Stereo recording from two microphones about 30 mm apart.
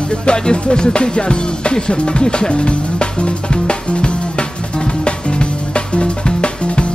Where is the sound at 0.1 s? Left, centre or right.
Left.